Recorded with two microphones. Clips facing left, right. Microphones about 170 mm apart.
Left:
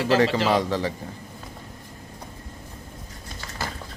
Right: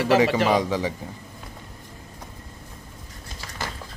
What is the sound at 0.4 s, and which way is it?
Speech, 15° right (ahead or behind).